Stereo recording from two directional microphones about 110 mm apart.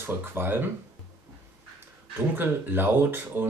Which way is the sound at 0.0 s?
20° right (ahead or behind).